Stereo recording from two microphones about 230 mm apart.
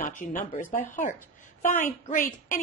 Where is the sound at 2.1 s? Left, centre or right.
Left.